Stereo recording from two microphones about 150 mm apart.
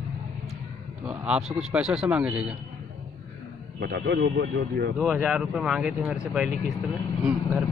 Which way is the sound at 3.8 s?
90° right.